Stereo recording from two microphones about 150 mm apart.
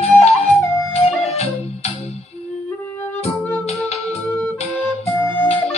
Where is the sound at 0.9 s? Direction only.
45° left (ahead or behind).